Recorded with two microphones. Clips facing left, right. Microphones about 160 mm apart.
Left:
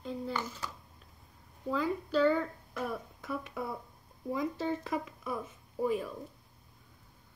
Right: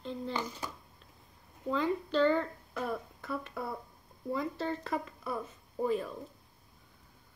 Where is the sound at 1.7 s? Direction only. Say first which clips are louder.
Right 1 dB; 5° left (ahead or behind).